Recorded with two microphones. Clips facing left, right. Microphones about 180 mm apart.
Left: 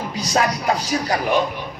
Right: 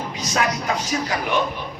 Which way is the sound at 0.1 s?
35° left (ahead or behind).